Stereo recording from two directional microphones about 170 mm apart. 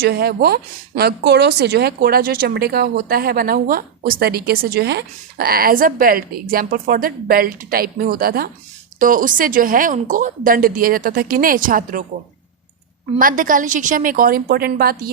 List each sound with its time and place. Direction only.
0.0 s speech: 70° right (ahead or behind)
13.1 s a woman's voice: 55° right (ahead or behind)